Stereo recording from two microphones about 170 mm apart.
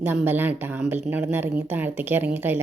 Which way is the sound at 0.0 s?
10° right (ahead or behind).